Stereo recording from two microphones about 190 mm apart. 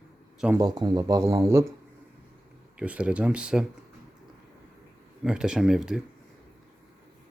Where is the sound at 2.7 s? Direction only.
5° right (ahead or behind).